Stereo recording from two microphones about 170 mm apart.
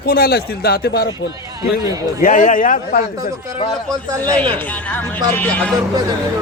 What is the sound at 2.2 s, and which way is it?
Speech, 50° left (ahead or behind).